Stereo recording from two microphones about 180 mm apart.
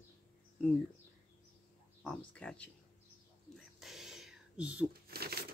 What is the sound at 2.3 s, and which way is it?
Speech, 5° left (ahead or behind).